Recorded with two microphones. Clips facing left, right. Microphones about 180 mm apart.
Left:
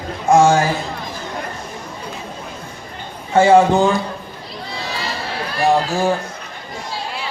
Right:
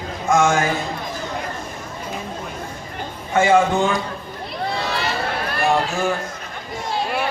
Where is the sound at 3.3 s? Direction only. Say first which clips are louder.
Left 4 dB; 35° left (ahead or behind).